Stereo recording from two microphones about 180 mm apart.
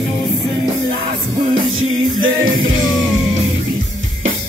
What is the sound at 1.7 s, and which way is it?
Music, 90° right.